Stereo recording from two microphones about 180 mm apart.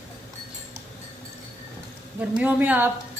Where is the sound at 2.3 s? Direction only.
10° right (ahead or behind).